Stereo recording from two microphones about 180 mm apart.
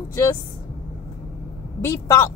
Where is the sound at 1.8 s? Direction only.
20° left (ahead or behind).